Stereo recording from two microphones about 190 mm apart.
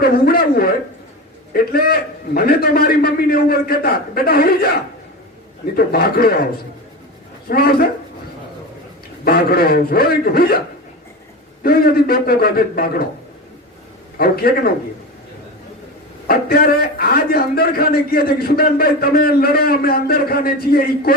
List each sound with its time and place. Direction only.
0.0 s a man's voice: 55° left (ahead or behind)
7.4 s a man's voice: 55° left (ahead or behind)
9.2 s a man's voice: 55° left (ahead or behind)
11.6 s a man's voice: 50° left (ahead or behind)
14.2 s a man's voice: 55° left (ahead or behind)
16.2 s a man's voice: 50° left (ahead or behind)